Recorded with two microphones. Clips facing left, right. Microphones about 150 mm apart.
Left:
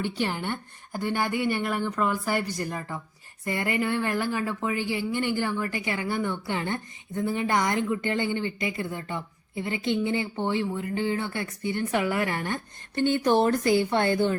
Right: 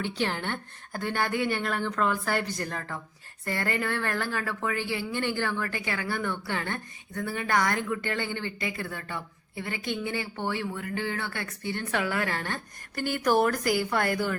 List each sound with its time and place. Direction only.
0.0 s speech: 10° left (ahead or behind); by 14.3 s 25° left (ahead or behind)